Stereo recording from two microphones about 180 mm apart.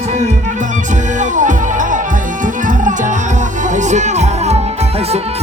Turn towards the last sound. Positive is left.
turn(degrees=-35)  # may be behind; listen again after turning